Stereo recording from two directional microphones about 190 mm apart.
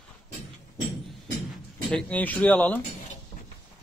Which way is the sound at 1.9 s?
10° left (ahead or behind).